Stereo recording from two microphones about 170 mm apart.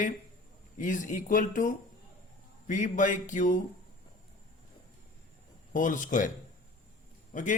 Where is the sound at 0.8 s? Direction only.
50° left (ahead or behind).